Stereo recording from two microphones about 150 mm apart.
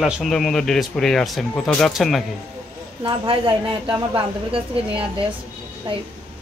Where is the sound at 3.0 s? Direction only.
35° right (ahead or behind).